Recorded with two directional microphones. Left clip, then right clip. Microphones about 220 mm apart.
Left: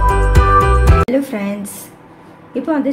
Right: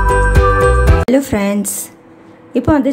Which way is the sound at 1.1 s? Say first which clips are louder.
Right 4 dB; 35° right (ahead or behind).